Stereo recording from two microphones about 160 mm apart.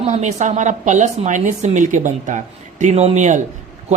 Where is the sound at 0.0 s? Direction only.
45° right (ahead or behind).